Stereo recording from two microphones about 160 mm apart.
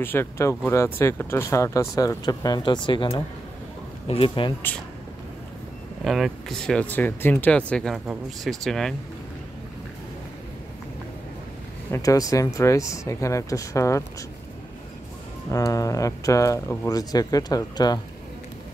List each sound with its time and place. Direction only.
0.0 s speech: 15° left (ahead or behind); by 4.6 s 35° left (ahead or behind)
6.0 s speech: centre (ahead or behind)
11.9 s speech: 20° left (ahead or behind)
15.5 s speech: 20° left (ahead or behind)